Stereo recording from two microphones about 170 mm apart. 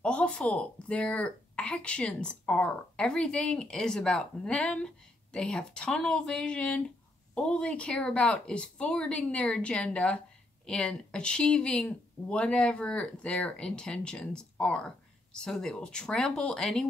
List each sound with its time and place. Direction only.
0.0 s a woman's voice: 5° left (ahead or behind)